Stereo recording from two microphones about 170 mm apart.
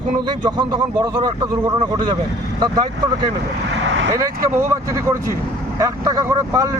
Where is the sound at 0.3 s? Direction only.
25° right (ahead or behind).